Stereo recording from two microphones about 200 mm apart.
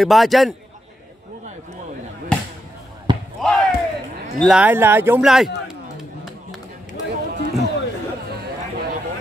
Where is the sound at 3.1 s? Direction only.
25° right (ahead or behind).